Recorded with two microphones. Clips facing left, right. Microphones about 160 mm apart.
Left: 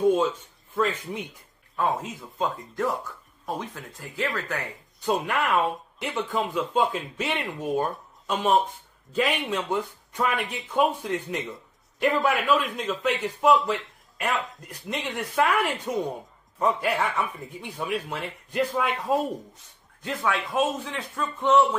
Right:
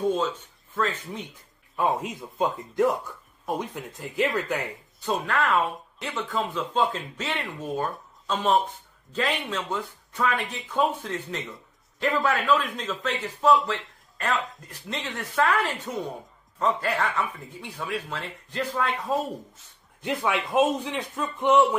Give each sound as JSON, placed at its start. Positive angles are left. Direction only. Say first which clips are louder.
{"t": 0.0, "sound": "speech", "louder": "left 4 dB", "side_deg": 10}
{"t": 1.8, "sound": "a man's voice", "louder": "right 1 dB", "side_deg": -15}
{"t": 5.0, "sound": "speech", "louder": "left 1 dB", "side_deg": 15}
{"t": 20.0, "sound": "a man's voice", "louder": "right 1 dB", "side_deg": -20}